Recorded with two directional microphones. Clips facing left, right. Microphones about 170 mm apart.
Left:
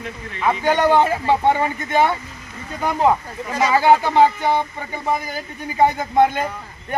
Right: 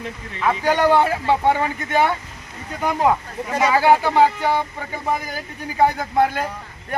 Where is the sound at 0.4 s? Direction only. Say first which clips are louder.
Even; 5° right (ahead or behind).